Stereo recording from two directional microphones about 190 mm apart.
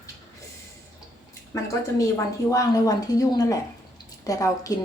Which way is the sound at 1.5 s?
15° left (ahead or behind).